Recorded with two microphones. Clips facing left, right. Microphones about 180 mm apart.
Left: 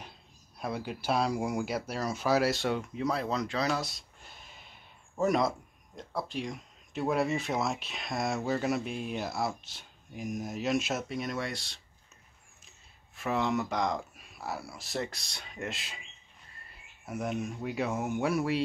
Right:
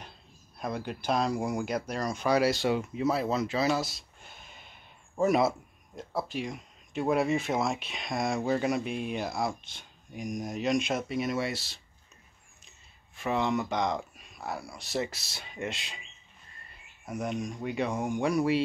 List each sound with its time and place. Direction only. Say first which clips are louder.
0.6 s speech: right 1 dB; 5° left (ahead or behind)
17.0 s speech: right 1 dB; 5° left (ahead or behind)